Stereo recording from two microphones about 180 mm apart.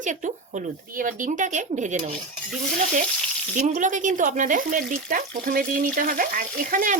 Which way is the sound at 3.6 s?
45° right (ahead or behind).